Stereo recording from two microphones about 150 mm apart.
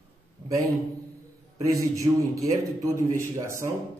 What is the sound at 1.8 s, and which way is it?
A man's voice, 20° right (ahead or behind).